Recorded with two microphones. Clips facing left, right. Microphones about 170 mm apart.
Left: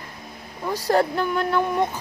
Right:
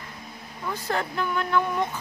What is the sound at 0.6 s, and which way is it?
Speech, 40° left (ahead or behind).